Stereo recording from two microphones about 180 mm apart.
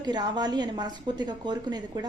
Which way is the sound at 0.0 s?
25° right (ahead or behind).